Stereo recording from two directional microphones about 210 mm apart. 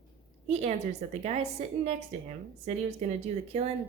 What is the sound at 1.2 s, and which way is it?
Speech, 30° right (ahead or behind).